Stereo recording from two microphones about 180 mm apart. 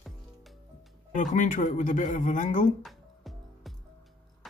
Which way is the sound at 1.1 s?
45° left (ahead or behind).